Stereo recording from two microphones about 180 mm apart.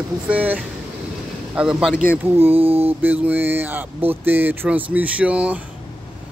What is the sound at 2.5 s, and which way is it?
Mantra, 30° right (ahead or behind).